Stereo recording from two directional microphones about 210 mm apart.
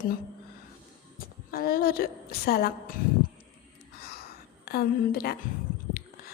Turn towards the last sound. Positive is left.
turn(degrees=45)  # may be behind; listen again after turning